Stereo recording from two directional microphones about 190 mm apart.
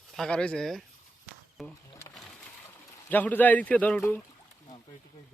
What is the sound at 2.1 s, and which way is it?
Pigeon, 5° left (ahead or behind).